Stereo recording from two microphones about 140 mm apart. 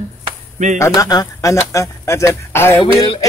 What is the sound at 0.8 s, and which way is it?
Speech, 25° left (ahead or behind).